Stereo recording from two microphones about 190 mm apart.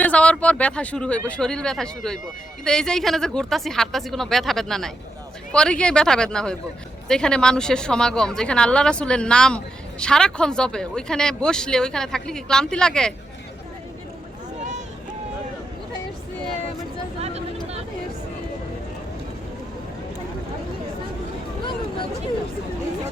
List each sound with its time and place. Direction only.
0.0 s speech: 5° left (ahead or behind)
17.2 s vehicle: 35° right (ahead or behind)